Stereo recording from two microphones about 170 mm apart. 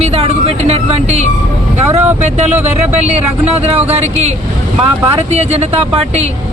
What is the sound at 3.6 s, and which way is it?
Speech, 35° right (ahead or behind).